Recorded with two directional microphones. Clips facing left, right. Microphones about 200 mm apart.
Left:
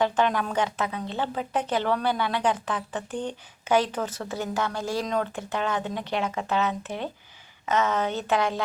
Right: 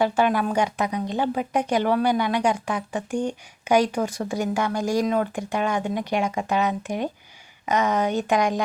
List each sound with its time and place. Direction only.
0.0 s speech: 10° right (ahead or behind)